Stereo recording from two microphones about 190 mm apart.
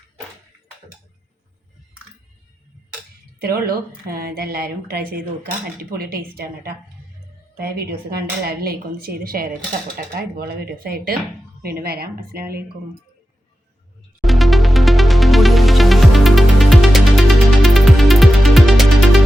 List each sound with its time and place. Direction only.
3.4 s a woman's voice: 50° right (ahead or behind)
6.0 s a woman's voice: 50° right (ahead or behind)
14.2 s music: centre (ahead or behind)